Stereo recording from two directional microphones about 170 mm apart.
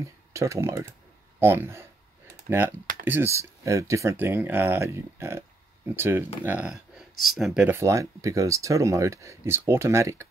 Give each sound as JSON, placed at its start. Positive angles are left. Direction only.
{"t": 0.0, "sound": "speech", "side_deg": -20}
{"t": 3.1, "sound": "speech", "side_deg": -15}